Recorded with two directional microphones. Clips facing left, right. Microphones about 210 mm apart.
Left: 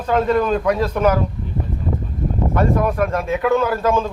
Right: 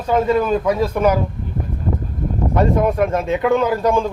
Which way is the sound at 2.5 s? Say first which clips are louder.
Right 3 dB; 25° right (ahead or behind).